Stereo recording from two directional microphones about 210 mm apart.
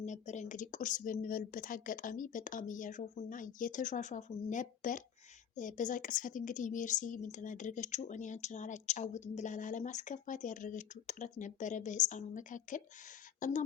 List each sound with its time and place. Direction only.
0.0 s a woman's voice: 35° left (ahead or behind)